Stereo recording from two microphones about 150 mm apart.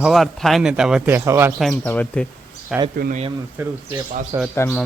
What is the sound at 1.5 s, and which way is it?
Speech, 5° left (ahead or behind).